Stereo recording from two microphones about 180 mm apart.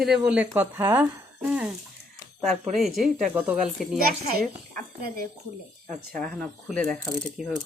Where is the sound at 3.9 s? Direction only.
55° right (ahead or behind).